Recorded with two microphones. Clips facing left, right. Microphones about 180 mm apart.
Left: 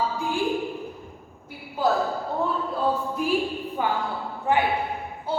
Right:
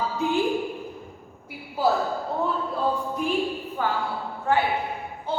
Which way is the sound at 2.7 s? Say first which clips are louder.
Left 1 dB; 5° left (ahead or behind).